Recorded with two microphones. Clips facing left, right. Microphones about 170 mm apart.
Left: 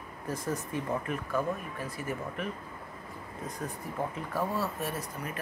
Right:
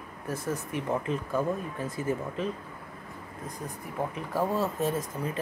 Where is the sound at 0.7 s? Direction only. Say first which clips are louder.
Right 3 dB; 20° right (ahead or behind).